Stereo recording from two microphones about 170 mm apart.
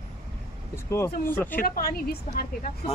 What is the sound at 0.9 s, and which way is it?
Speech, 15° left (ahead or behind).